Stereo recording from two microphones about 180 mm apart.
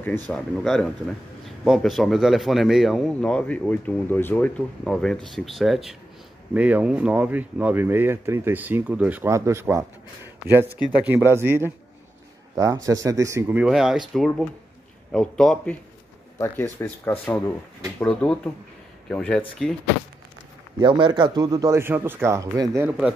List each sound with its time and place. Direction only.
0.3 s a man's voice: centre (ahead or behind)
20.8 s speech: 25° right (ahead or behind)
22.8 s a man's voice: 5° right (ahead or behind)